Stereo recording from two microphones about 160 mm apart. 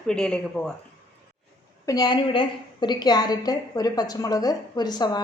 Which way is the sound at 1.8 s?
25° left (ahead or behind).